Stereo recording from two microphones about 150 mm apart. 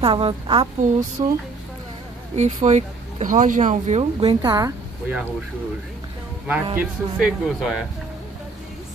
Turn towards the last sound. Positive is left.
turn(degrees=-5)  # may be behind; listen again after turning